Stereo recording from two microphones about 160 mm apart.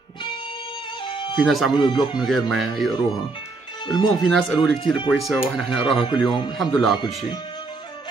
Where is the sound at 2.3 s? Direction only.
Centre (ahead or behind).